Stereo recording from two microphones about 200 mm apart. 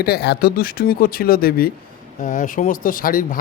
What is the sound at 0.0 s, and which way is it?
A man's voice, 55° left (ahead or behind).